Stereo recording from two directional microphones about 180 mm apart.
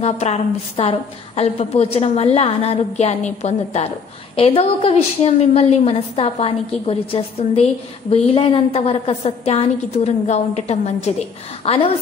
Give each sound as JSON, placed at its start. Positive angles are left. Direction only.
{"t": 0.0, "sound": "a woman's voice", "side_deg": 40}